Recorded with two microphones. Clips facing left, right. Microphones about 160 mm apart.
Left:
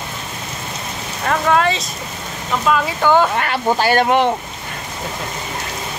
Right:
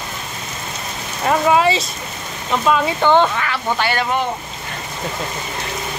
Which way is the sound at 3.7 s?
40° left (ahead or behind).